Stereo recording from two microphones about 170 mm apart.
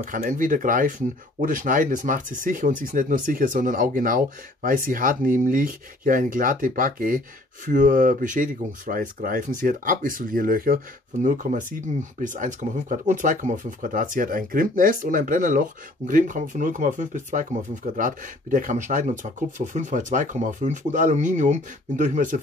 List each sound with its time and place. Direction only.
0.0 s speech: 50° right (ahead or behind)
11.4 s speech: 40° right (ahead or behind)
12.2 s speech: 50° right (ahead or behind)